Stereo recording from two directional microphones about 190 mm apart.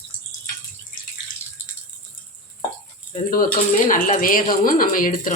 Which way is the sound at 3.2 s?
45° left (ahead or behind).